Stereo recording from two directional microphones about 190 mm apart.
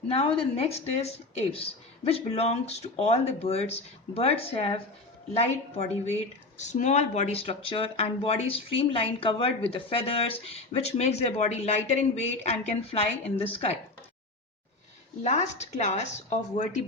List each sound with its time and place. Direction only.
0.1 s speech: 30° left (ahead or behind)
15.2 s speech: 35° left (ahead or behind)